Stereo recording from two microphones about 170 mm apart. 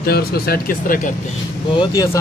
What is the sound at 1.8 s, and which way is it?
Speech, 20° left (ahead or behind).